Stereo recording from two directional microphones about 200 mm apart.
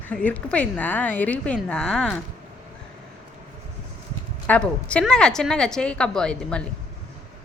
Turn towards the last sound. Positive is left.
turn(degrees=5)  # may be behind; listen again after turning